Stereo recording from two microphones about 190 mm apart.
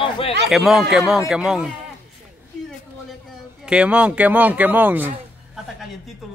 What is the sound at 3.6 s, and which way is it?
Speech, 5° right (ahead or behind).